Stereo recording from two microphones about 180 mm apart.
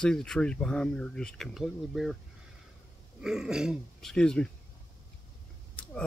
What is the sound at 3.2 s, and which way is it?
Speech, 5° right (ahead or behind).